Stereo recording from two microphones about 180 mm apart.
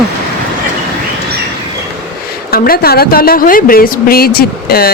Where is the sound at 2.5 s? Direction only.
55° left (ahead or behind).